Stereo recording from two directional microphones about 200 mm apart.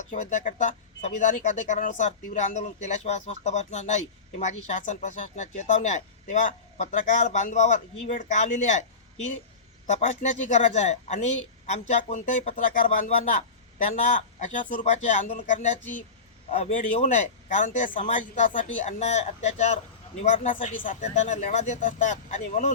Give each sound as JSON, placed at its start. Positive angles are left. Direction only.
{"t": 0.1, "sound": "speech", "side_deg": 40}
{"t": 9.8, "sound": "speech", "side_deg": 35}